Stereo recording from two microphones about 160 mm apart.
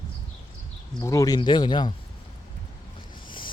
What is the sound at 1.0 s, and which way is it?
Speech, 20° left (ahead or behind).